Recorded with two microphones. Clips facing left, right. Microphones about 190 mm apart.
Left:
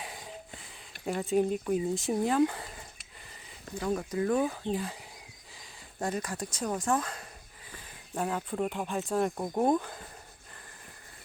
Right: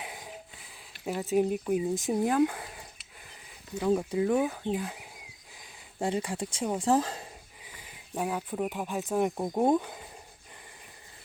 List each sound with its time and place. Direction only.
0.0 s a sound: 10° right (ahead or behind)
1.0 s speech: centre (ahead or behind)
1.5 s speech: 15° right (ahead or behind)
6.0 s speech: 25° right (ahead or behind)
7.7 s speech: 10° right (ahead or behind)
9.2 s speech: 15° right (ahead or behind)